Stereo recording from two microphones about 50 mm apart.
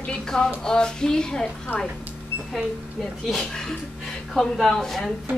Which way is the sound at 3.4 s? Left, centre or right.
Centre.